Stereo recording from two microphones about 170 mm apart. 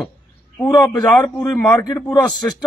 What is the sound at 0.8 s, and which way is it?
Speech, 10° left (ahead or behind).